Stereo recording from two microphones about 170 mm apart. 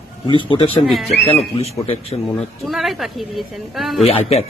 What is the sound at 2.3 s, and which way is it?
Speech, centre (ahead or behind).